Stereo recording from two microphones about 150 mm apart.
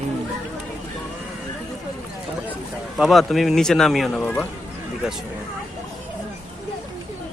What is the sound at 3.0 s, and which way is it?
Speech, centre (ahead or behind).